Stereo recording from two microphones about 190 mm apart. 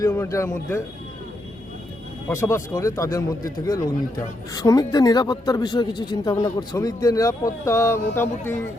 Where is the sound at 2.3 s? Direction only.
15° left (ahead or behind).